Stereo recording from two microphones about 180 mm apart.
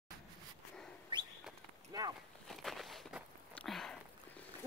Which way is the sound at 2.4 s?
Centre (ahead or behind).